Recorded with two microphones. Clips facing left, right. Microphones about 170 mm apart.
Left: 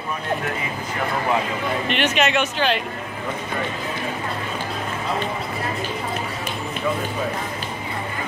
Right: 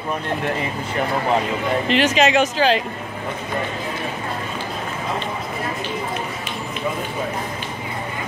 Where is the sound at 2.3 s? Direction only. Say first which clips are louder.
Right 4 dB; 35° right (ahead or behind).